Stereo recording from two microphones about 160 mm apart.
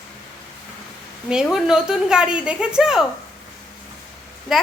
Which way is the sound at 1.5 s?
5° right (ahead or behind).